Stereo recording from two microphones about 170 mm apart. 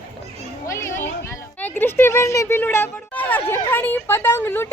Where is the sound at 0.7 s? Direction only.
15° left (ahead or behind).